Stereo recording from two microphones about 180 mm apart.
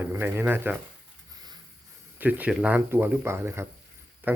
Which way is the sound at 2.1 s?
10° right (ahead or behind).